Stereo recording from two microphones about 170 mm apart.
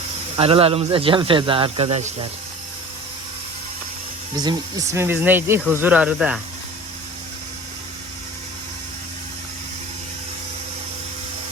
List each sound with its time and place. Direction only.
0.3 s speech: 35° right (ahead or behind)
4.4 s speech: 20° right (ahead or behind)